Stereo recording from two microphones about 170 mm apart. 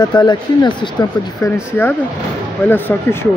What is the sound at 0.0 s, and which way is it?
Speech, 25° left (ahead or behind).